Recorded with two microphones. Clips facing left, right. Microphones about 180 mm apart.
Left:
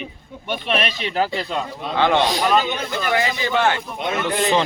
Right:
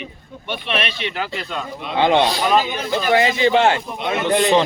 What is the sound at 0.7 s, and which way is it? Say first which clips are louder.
Speech: left 1 dB; 40° left (ahead or behind).